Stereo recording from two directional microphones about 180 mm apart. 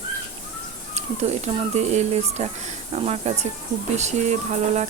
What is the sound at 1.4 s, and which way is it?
Speech, 40° right (ahead or behind).